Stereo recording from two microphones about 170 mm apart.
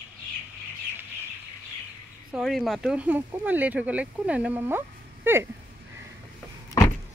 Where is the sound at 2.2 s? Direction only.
Centre (ahead or behind).